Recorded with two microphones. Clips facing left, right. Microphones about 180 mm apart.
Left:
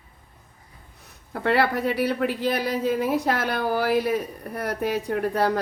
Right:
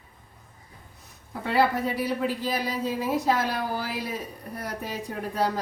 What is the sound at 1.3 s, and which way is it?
Speech, 65° left (ahead or behind).